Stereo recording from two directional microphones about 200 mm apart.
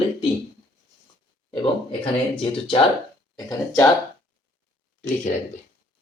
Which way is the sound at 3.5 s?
15° left (ahead or behind).